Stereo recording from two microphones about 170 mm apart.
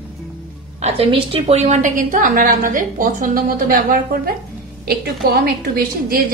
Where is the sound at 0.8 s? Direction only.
35° right (ahead or behind); by 4.3 s 55° right (ahead or behind).